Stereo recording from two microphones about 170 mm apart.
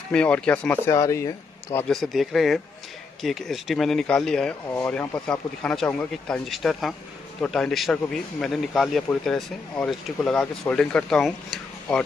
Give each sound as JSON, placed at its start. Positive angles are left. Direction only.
{"t": 0.1, "sound": "speech", "side_deg": 5}
{"t": 0.9, "sound": "speech", "side_deg": 20}
{"t": 1.9, "sound": "speech", "side_deg": 0}